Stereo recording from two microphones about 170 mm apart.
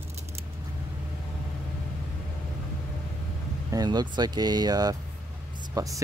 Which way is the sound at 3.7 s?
25° right (ahead or behind).